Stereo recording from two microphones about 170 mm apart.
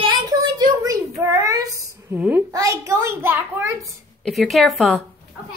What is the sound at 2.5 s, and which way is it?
A child's voice, 20° right (ahead or behind).